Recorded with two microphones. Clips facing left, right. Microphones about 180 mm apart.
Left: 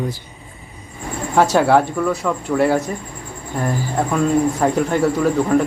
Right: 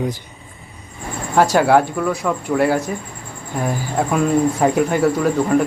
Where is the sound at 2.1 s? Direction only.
15° right (ahead or behind).